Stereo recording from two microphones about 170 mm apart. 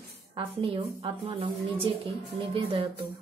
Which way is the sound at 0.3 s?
30° right (ahead or behind).